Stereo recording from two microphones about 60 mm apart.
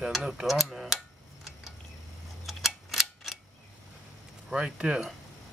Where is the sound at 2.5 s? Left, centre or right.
Centre.